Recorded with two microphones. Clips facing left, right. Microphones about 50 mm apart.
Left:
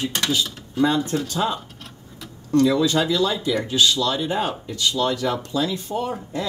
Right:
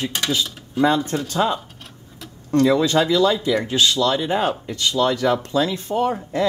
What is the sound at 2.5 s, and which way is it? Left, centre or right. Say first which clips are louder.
Speech: right 1 dB; right.